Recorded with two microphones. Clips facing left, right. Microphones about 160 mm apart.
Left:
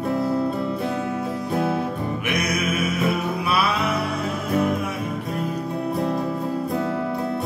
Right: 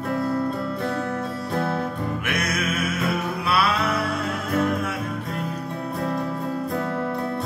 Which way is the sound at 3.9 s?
Centre (ahead or behind).